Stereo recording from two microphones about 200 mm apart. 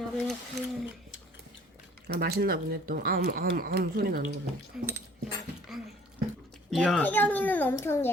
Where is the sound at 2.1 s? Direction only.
50° right (ahead or behind).